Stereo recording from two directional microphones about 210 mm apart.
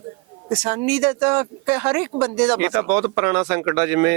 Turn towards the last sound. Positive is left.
turn(degrees=-10)  # may be behind; listen again after turning